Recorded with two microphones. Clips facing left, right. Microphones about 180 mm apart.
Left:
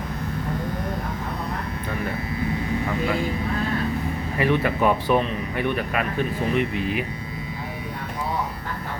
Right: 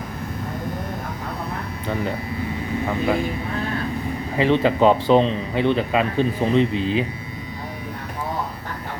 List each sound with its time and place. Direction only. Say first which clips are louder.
4.4 s speech: right 4 dB; 25° right (ahead or behind)